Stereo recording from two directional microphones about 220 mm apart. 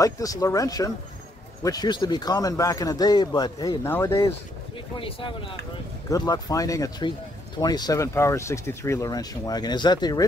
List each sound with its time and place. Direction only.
0.0 s speech: 15° left (ahead or behind)
4.9 s speech: 25° left (ahead or behind)